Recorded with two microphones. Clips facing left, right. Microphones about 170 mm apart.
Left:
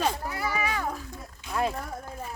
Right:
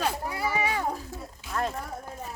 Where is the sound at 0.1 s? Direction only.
15° right (ahead or behind).